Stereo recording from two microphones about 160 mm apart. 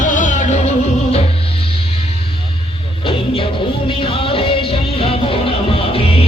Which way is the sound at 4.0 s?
35° left (ahead or behind).